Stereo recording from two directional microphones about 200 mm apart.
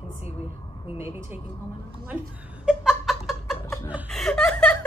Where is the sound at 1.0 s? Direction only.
15° right (ahead or behind).